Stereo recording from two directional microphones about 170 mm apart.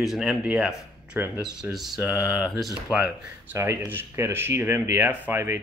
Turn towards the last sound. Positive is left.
turn(degrees=-10)  # may be behind; listen again after turning